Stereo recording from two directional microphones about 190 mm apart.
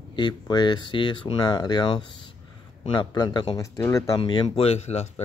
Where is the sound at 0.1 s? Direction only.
20° left (ahead or behind).